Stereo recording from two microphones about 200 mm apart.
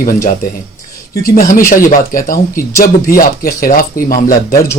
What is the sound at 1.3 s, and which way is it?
Speech, 45° left (ahead or behind).